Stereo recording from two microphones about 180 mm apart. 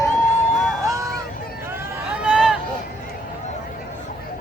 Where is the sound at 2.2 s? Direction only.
5° right (ahead or behind).